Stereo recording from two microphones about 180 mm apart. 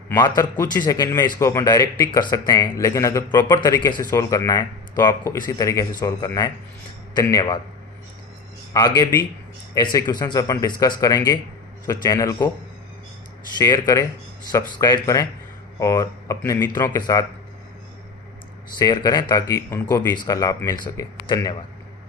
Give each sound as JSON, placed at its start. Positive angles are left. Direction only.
{"t": 0.2, "sound": "speech", "side_deg": 20}
{"t": 8.7, "sound": "speech", "side_deg": 20}
{"t": 13.6, "sound": "speech", "side_deg": 20}
{"t": 18.8, "sound": "speech", "side_deg": 20}